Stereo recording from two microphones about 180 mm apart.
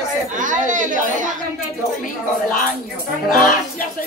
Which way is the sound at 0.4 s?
45° right (ahead or behind).